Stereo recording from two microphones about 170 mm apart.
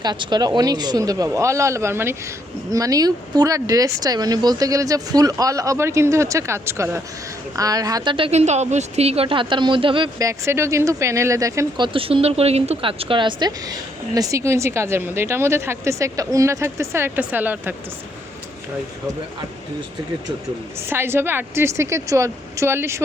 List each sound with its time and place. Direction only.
0.0 s speech: 25° right (ahead or behind)
11.9 s a woman's voice: 35° right (ahead or behind); by 17.7 s 10° right (ahead or behind)
20.9 s a woman's voice: 15° right (ahead or behind)